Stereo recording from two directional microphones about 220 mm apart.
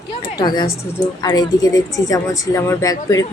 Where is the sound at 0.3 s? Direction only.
20° left (ahead or behind).